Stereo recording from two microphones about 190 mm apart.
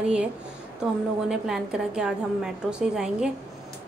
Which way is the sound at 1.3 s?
5° right (ahead or behind).